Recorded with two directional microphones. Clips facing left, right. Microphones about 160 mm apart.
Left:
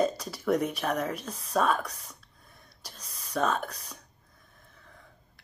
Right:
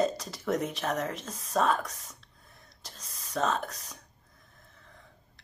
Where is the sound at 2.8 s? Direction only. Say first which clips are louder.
Left 1 dB; 25° right (ahead or behind).